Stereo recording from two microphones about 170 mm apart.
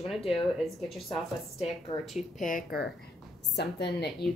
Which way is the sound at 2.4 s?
55° left (ahead or behind).